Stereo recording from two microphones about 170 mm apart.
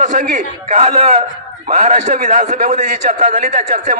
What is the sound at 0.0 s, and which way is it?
A man's voice, 50° right (ahead or behind).